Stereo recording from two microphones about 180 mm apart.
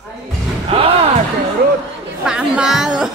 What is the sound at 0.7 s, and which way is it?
Speech, 30° right (ahead or behind).